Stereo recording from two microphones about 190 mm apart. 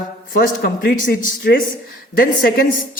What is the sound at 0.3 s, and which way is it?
A woman's voice, 55° left (ahead or behind).